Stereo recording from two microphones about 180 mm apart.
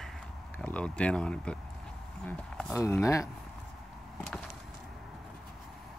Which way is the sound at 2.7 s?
15° left (ahead or behind).